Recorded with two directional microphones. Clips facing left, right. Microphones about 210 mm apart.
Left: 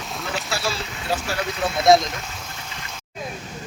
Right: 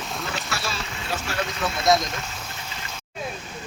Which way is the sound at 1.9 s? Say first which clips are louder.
Left 5 dB; 30° left (ahead or behind).